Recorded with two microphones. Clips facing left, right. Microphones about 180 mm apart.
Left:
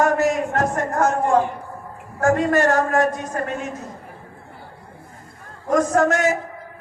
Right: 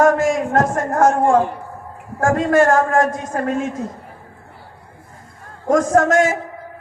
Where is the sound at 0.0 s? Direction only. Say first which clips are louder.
Right 3 dB; 50° right (ahead or behind).